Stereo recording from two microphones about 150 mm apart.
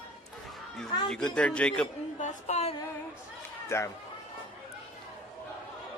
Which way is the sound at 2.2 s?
45° left (ahead or behind).